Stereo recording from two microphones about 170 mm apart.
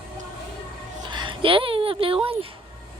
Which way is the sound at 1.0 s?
25° right (ahead or behind).